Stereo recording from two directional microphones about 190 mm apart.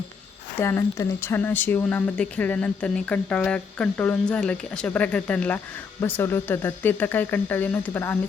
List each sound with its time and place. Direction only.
0.5 s speech: 15° left (ahead or behind)